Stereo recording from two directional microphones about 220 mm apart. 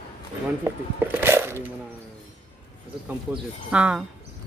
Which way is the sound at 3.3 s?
5° right (ahead or behind).